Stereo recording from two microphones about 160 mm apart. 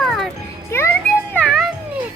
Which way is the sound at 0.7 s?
15° left (ahead or behind).